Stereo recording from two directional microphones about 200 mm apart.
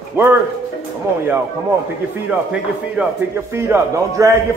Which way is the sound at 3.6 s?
15° right (ahead or behind).